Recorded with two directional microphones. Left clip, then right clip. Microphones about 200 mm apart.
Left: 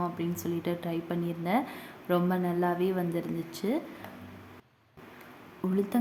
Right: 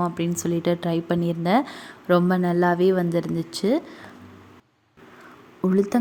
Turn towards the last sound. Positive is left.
turn(degrees=-30)  # may be behind; listen again after turning